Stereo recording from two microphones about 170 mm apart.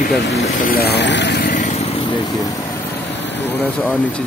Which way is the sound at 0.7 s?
70° left (ahead or behind).